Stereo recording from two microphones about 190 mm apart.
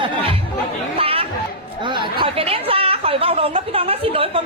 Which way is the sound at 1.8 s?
25° right (ahead or behind).